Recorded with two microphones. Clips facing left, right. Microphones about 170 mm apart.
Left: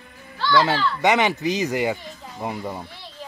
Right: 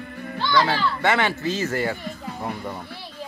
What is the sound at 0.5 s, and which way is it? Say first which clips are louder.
Speech: left 2 dB; 15° left (ahead or behind).